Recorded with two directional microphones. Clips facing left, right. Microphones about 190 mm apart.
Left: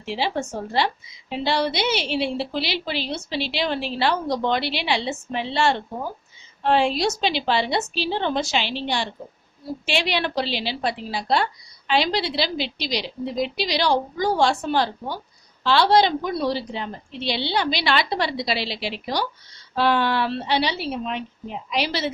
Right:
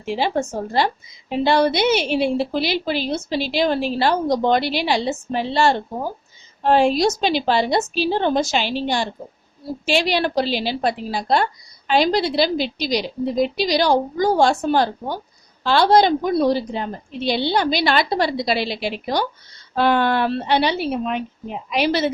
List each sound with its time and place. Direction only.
0.0 s a woman's voice: 50° right (ahead or behind)